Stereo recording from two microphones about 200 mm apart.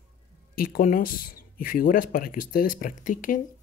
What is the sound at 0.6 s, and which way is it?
Speech, 45° left (ahead or behind).